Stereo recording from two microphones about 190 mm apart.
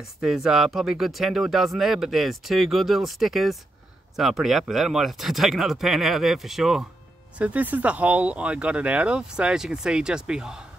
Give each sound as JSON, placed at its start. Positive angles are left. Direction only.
{"t": 0.2, "sound": "speech", "side_deg": 0}